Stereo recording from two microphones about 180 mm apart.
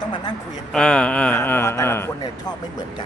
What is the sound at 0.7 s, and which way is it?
Speech, 5° left (ahead or behind).